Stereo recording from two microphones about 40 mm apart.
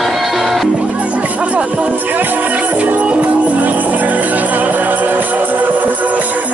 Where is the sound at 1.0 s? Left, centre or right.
Right.